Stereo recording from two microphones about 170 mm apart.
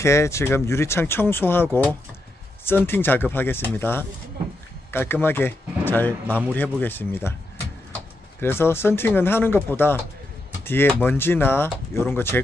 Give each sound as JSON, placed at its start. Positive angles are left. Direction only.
{"t": 0.0, "sound": "speech", "side_deg": 15}
{"t": 8.4, "sound": "speech", "side_deg": 15}